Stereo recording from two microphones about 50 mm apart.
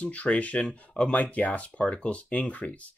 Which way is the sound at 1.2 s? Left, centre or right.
Left.